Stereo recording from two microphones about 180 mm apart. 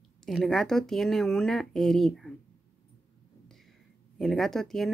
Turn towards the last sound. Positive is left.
turn(degrees=0)  # may be behind; listen again after turning